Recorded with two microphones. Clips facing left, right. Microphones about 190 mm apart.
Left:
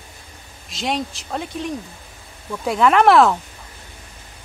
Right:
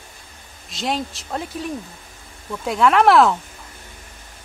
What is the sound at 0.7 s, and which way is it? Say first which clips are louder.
Speech: even; centre (ahead or behind).